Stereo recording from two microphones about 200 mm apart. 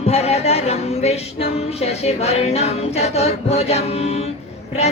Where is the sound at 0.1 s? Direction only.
30° left (ahead or behind).